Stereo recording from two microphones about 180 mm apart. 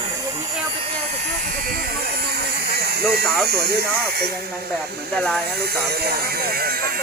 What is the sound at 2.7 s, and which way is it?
Hiss, 60° right (ahead or behind).